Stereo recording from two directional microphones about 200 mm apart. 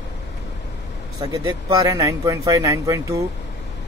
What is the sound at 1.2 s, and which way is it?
Speech, 20° right (ahead or behind).